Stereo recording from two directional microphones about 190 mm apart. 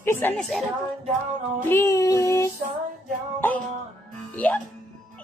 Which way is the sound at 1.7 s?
15° left (ahead or behind).